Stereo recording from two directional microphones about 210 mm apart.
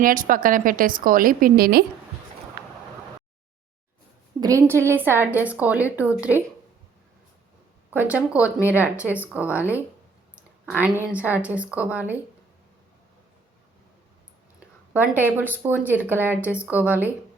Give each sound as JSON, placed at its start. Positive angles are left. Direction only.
{"t": 0.0, "sound": "a woman's voice", "side_deg": -40}
{"t": 4.4, "sound": "a woman's voice", "side_deg": -15}
{"t": 7.9, "sound": "a woman's voice", "side_deg": -5}
{"t": 11.0, "sound": "a woman's voice", "side_deg": -5}
{"t": 14.6, "sound": "a woman's voice", "side_deg": -10}